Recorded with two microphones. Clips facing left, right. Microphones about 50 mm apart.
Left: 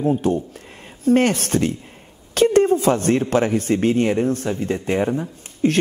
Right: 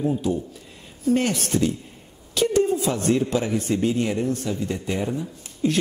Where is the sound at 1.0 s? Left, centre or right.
Left.